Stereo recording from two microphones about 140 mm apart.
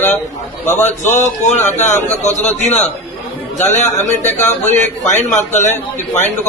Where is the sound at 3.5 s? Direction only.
55° left (ahead or behind).